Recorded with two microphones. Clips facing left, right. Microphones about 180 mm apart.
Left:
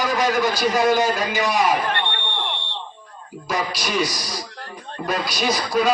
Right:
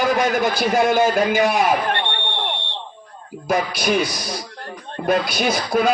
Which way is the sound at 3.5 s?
50° right (ahead or behind).